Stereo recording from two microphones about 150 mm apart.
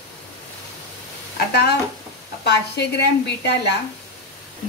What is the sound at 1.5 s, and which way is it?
Speech, 90° left.